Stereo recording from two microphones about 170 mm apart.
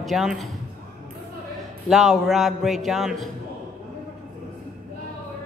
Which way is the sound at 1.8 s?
Centre (ahead or behind).